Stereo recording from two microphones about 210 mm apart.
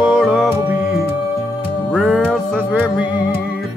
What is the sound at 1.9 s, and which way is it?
Music, 5° left (ahead or behind).